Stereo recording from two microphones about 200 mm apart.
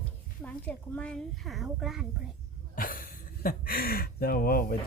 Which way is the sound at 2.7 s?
45° left (ahead or behind).